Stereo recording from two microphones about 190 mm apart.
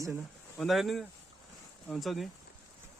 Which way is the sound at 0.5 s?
Centre (ahead or behind).